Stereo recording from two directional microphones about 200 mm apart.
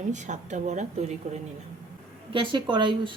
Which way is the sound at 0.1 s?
35° right (ahead or behind).